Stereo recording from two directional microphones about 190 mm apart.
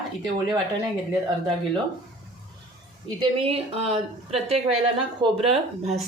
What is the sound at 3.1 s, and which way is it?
A woman's voice, 30° right (ahead or behind).